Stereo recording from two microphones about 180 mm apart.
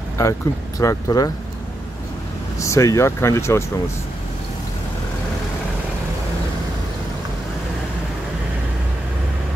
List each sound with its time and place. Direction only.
0.2 s speech: 20° left (ahead or behind)
2.6 s speech: 15° left (ahead or behind)